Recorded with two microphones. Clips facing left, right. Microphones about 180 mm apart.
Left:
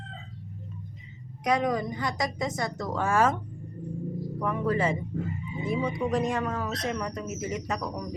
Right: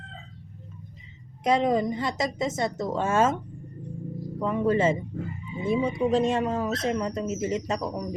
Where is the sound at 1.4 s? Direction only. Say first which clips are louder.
Right 3 dB; 25° right (ahead or behind).